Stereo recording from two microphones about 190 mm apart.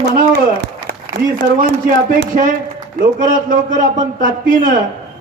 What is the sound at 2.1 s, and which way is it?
Speech, 45° right (ahead or behind).